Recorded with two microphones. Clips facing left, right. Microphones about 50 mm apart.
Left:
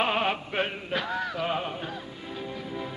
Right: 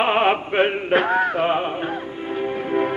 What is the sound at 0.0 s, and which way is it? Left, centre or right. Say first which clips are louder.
Music: right 8 dB; right.